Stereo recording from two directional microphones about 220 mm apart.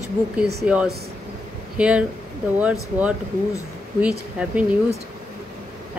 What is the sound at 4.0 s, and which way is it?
Speech, 5° right (ahead or behind).